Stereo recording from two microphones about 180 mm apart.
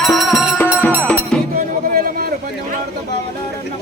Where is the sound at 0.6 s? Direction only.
10° left (ahead or behind).